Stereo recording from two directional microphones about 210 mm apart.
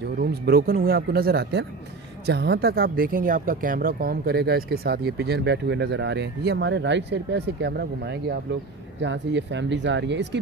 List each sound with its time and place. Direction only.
0.2 s speech: 45° right (ahead or behind)